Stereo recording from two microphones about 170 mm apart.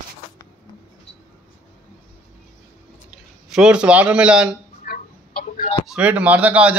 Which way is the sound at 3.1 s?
5° right (ahead or behind).